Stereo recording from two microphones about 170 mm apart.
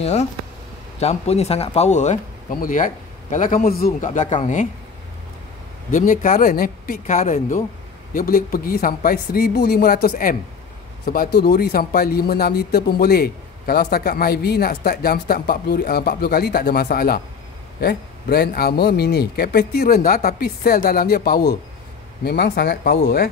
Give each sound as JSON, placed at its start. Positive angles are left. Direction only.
{"t": 0.0, "sound": "speech", "side_deg": 40}
{"t": 5.9, "sound": "a man's voice", "side_deg": 50}